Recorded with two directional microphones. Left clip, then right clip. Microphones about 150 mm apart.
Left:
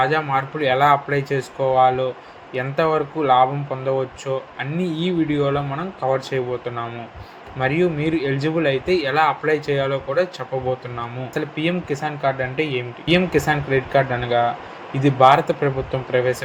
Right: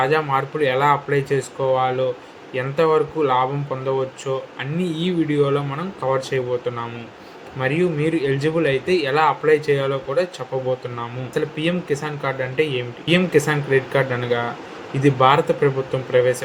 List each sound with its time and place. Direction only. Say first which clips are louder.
0.0 s speech: even; 35° left (ahead or behind)
11.3 s speech: right 1 dB; 35° left (ahead or behind)